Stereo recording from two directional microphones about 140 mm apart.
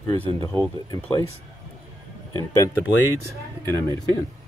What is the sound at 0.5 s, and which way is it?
Speech, 15° left (ahead or behind).